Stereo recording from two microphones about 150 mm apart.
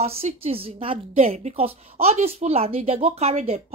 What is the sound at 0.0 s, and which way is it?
A woman's voice, 45° right (ahead or behind).